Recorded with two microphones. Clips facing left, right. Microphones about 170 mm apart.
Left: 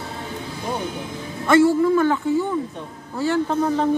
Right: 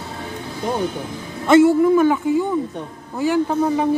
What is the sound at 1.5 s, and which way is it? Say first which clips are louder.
A man's voice: right 3 dB; 20° right (ahead or behind).